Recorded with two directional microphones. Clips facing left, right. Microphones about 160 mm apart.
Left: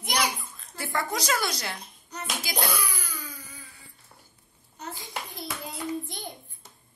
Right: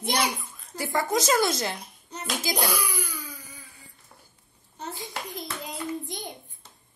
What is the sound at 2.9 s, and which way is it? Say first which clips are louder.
Cough: right 4 dB; 10° right (ahead or behind).